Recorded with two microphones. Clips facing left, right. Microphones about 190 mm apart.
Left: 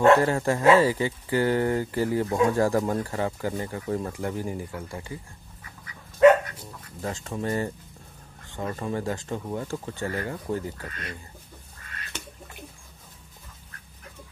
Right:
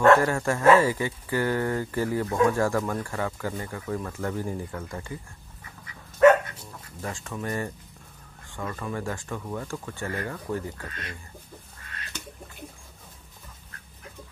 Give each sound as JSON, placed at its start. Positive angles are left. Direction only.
{"t": 0.0, "sound": "speech", "side_deg": 20}
{"t": 6.5, "sound": "speech", "side_deg": 20}